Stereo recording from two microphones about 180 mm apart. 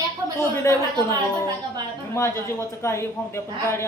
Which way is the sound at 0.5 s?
15° left (ahead or behind).